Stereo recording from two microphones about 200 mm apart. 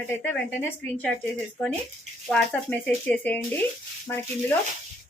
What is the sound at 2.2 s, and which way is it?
A woman's voice, 5° left (ahead or behind).